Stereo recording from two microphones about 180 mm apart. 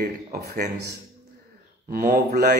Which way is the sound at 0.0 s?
60° right (ahead or behind).